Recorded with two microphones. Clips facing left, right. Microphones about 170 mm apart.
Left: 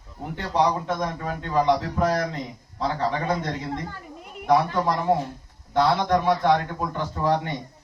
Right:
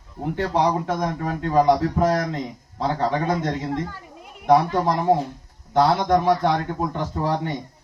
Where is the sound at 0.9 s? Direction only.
40° right (ahead or behind).